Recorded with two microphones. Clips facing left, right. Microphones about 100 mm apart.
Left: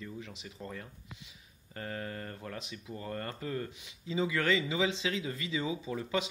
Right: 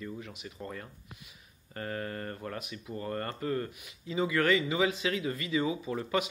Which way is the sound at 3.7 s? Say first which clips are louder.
Right 1 dB; 25° left (ahead or behind).